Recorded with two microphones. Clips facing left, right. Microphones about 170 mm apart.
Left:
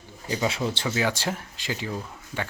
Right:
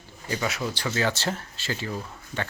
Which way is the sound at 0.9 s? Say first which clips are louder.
Right 2 dB; 10° left (ahead or behind).